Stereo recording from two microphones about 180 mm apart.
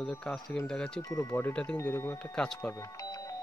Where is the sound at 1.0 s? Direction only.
20° left (ahead or behind).